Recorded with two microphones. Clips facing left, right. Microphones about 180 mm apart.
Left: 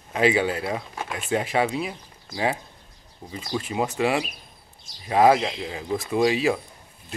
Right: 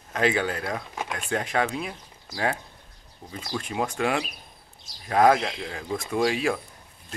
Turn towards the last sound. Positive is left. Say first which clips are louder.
# left 3 dB
turn(degrees=5)  # may be behind; listen again after turning